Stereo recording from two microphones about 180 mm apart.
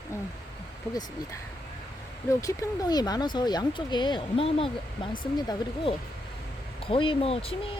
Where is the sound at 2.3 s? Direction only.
20° left (ahead or behind).